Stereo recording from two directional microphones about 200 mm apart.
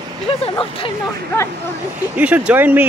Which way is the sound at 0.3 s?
25° left (ahead or behind).